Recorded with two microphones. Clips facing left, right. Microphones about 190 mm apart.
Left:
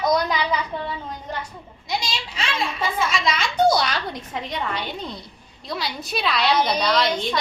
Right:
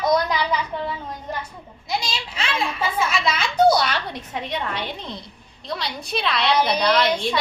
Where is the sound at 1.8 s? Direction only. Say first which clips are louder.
Right 1 dB; centre (ahead or behind).